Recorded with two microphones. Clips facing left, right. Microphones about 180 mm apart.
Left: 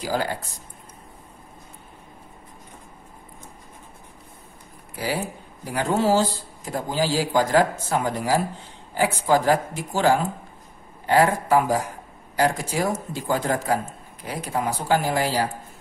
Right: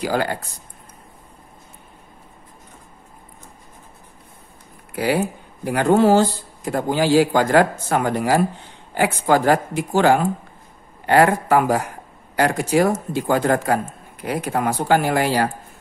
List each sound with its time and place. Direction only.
0.0 s speech: 65° right (ahead or behind)
4.9 s speech: 65° right (ahead or behind)